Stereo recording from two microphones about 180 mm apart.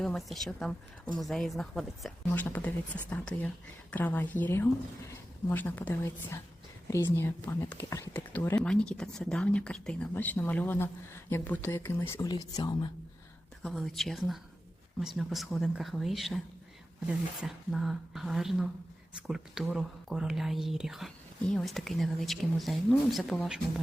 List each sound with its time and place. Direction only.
0.0 s speech: centre (ahead or behind); by 12.9 s 20° left (ahead or behind)
13.6 s speech: 5° left (ahead or behind)